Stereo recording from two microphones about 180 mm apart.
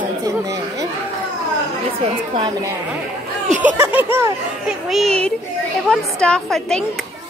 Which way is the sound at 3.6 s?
10° right (ahead or behind).